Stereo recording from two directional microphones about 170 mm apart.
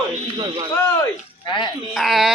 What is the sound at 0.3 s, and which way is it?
Speech, 30° right (ahead or behind).